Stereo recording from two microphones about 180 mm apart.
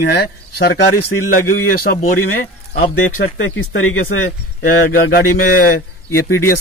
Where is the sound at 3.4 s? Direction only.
90° left.